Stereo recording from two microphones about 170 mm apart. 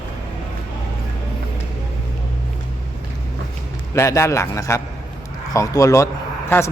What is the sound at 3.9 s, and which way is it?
A man's voice, 15° left (ahead or behind).